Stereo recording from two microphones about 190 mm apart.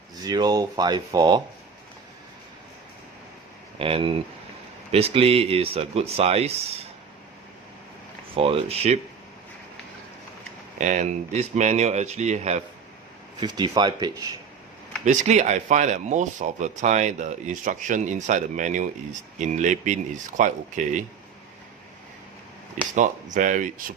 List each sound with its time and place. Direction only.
0.2 s speech: 20° right (ahead or behind)
3.8 s speech: 30° right (ahead or behind)
8.4 s speech: 30° right (ahead or behind)
10.8 s speech: 40° right (ahead or behind)
13.4 s speech: 20° right (ahead or behind)
15.0 s speech: 40° right (ahead or behind)
23.0 s speech: 40° right (ahead or behind)